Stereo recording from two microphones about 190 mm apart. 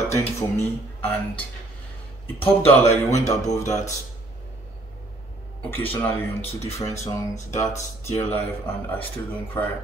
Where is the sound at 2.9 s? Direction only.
35° left (ahead or behind).